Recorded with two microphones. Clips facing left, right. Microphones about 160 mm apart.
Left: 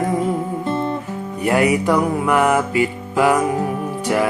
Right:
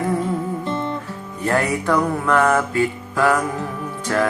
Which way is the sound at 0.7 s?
30° left (ahead or behind).